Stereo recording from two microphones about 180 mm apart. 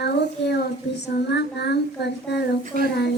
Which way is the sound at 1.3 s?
70° left (ahead or behind).